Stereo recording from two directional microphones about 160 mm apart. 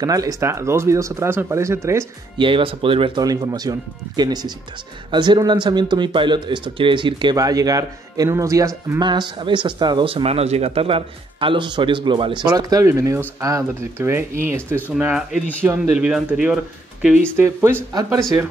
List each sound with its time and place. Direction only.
0.0 s speech: 20° right (ahead or behind)
2.3 s speech: 30° right (ahead or behind)
9.0 s speech: 30° right (ahead or behind); by 16.3 s 5° right (ahead or behind)
17.4 s speech: 15° right (ahead or behind)